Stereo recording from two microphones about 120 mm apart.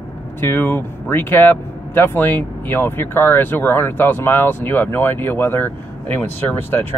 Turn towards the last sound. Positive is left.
turn(degrees=15)  # may be behind; listen again after turning